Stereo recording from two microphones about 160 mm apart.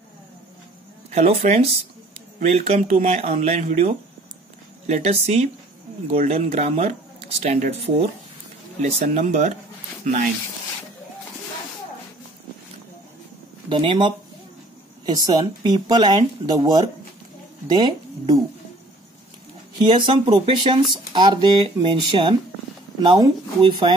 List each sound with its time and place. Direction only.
1.1 s speech: 40° right (ahead or behind)
13.7 s speech: 30° right (ahead or behind)
19.9 s speech: 30° right (ahead or behind)